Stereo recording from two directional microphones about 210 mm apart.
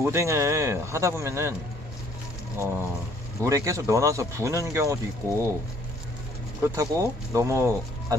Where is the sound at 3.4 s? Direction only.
15° right (ahead or behind).